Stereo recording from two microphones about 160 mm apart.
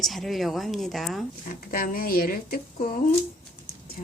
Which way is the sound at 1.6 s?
60° left (ahead or behind).